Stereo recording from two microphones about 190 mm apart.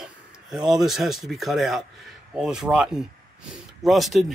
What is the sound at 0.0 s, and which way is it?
Speech, centre (ahead or behind).